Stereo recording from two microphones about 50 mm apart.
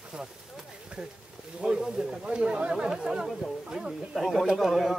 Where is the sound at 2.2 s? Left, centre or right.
Centre.